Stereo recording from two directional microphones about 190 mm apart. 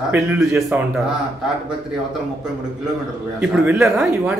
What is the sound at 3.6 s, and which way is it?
Speech, 5° right (ahead or behind).